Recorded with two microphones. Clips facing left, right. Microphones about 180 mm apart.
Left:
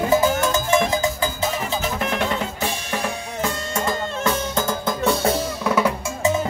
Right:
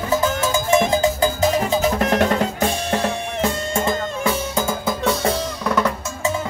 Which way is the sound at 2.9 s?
30° right (ahead or behind).